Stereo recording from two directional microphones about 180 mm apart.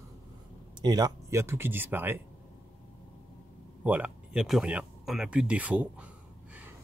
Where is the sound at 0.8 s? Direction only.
20° right (ahead or behind).